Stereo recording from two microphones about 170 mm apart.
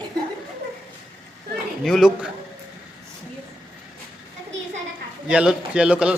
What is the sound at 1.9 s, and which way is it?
Speech, centre (ahead or behind).